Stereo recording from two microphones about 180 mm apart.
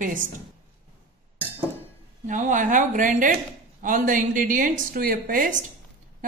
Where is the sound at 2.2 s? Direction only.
45° right (ahead or behind).